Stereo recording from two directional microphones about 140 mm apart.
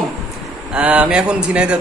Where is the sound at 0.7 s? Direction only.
10° right (ahead or behind).